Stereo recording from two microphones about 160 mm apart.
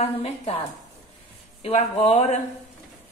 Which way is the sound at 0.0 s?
40° left (ahead or behind).